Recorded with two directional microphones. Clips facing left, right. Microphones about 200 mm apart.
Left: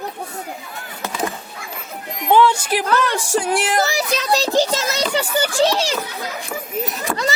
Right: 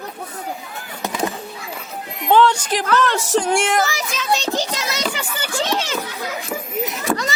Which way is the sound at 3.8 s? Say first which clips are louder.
Left 3 dB; 35° left (ahead or behind).